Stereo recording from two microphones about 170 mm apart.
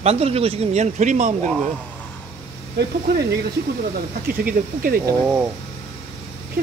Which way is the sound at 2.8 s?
75° right (ahead or behind).